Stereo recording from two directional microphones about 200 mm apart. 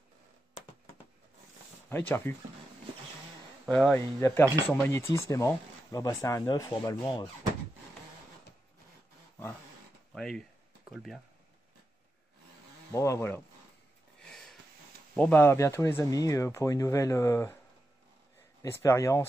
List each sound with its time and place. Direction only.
1.9 s speech: 10° left (ahead or behind)
3.6 s speech: 5° left (ahead or behind); by 7.2 s 20° left (ahead or behind)
10.1 s speech: centre (ahead or behind)
12.9 s speech: 15° left (ahead or behind)
14.2 s sniff: centre (ahead or behind)
15.1 s speech: 10° left (ahead or behind)
18.6 s speech: 15° left (ahead or behind)